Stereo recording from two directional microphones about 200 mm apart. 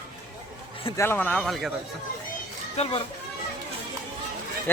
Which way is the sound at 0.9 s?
10° left (ahead or behind).